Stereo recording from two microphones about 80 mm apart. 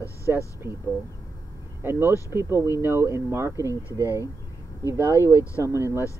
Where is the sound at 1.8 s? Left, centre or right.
Right.